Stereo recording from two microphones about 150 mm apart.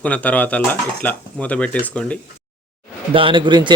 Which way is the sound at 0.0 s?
10° left (ahead or behind).